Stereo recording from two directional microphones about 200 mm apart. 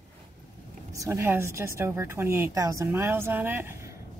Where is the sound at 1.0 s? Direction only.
15° right (ahead or behind).